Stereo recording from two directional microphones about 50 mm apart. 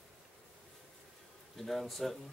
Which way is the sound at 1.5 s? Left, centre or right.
Centre.